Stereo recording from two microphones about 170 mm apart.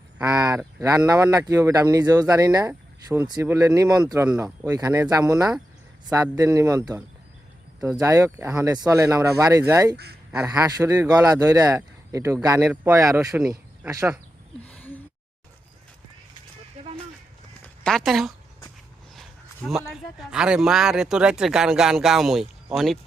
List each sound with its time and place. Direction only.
0.2 s speech: 20° right (ahead or behind)
4.3 s speech: 5° right (ahead or behind)
4.6 s speech: 20° right (ahead or behind)
6.3 s speech: 20° right (ahead or behind)
14.7 s a sound: 5° left (ahead or behind)
17.6 s a sound: 5° left (ahead or behind)
19.9 s speech: 5° right (ahead or behind)